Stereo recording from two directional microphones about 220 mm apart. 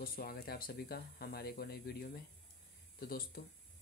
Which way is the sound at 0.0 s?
40° left (ahead or behind).